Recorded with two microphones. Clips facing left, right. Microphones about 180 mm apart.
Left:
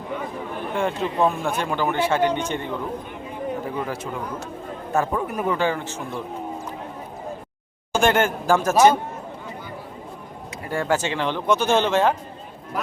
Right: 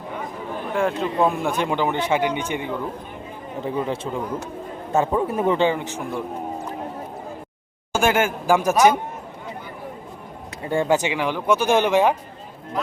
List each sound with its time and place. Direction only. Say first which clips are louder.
0.7 s speech: right 2 dB; centre (ahead or behind)
1.4 s speech: right 2 dB; 15° right (ahead or behind)
3.6 s speech: right 3 dB; 25° right (ahead or behind)
7.9 s speech: even; 5° right (ahead or behind)
10.6 s speech: right 3 dB; 25° right (ahead or behind)